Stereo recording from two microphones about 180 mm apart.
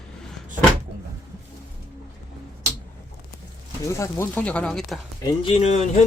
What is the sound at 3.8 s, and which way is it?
Speech, 15° left (ahead or behind).